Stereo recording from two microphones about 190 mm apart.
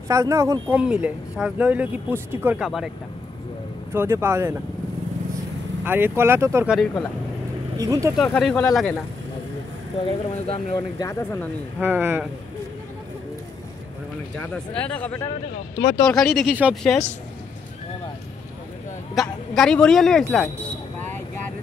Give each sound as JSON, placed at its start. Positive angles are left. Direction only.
{"t": 0.1, "sound": "speech", "side_deg": -15}
{"t": 3.9, "sound": "speech", "side_deg": -10}
{"t": 5.9, "sound": "speech", "side_deg": -10}
{"t": 6.7, "sound": "speech", "side_deg": 5}
{"t": 7.7, "sound": "speech", "side_deg": -20}
{"t": 8.2, "sound": "speech", "side_deg": 0}
{"t": 10.0, "sound": "speech", "side_deg": 30}
{"t": 11.8, "sound": "speech", "side_deg": -10}
{"t": 14.5, "sound": "speech", "side_deg": 5}
{"t": 19.2, "sound": "speech", "side_deg": 0}